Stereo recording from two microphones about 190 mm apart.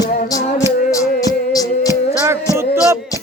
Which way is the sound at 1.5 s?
20° left (ahead or behind).